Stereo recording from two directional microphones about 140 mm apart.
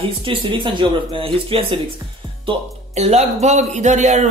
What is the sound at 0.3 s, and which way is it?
Speech, 35° right (ahead or behind).